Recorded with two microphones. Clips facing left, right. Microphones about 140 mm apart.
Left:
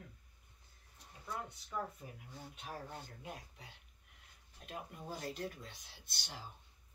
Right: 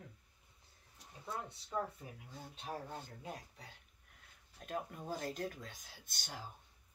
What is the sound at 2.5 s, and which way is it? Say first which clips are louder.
Speech: right 3 dB; 25° right (ahead or behind).